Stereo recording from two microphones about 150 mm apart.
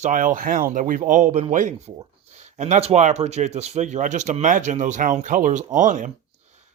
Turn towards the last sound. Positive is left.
turn(degrees=-55)  # may be behind; listen again after turning